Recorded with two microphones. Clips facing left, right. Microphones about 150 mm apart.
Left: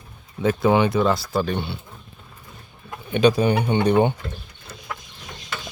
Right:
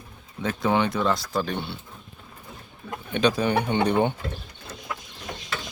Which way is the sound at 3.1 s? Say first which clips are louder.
Left 5 dB; 10° left (ahead or behind).